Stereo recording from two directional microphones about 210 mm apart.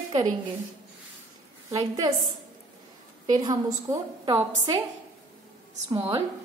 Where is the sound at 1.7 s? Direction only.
15° right (ahead or behind).